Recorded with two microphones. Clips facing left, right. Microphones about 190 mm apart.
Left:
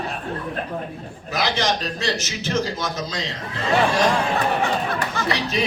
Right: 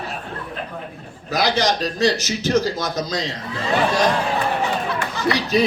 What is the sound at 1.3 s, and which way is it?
A man's voice, 35° right (ahead or behind).